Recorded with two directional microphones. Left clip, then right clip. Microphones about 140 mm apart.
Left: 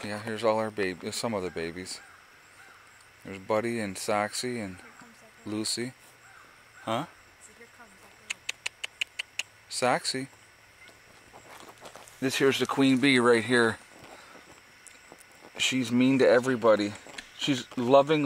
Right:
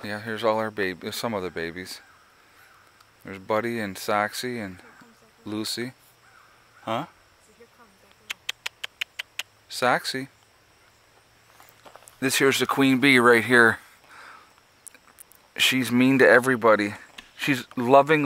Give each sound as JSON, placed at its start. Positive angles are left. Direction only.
{"t": 0.0, "sound": "speech", "side_deg": -20}
{"t": 3.3, "sound": "speech", "side_deg": -20}
{"t": 6.8, "sound": "a sound", "side_deg": -10}
{"t": 8.3, "sound": "a sound", "side_deg": -20}
{"t": 12.2, "sound": "speech", "side_deg": -20}
{"t": 15.5, "sound": "speech", "side_deg": -25}